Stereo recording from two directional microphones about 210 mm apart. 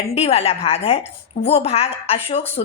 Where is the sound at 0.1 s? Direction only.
30° left (ahead or behind).